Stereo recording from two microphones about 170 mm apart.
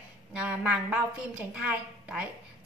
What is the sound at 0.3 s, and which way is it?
A woman's voice, 5° right (ahead or behind).